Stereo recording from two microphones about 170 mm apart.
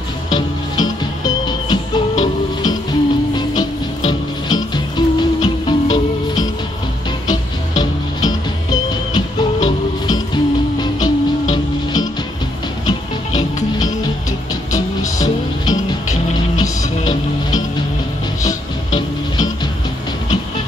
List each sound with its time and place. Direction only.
0.3 s music: 25° left (ahead or behind)
9.7 s music: 25° left (ahead or behind)
15.0 s music: 20° left (ahead or behind)
18.9 s music: 25° left (ahead or behind)